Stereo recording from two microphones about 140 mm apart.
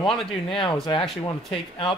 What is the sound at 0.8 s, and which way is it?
Speech, 35° left (ahead or behind).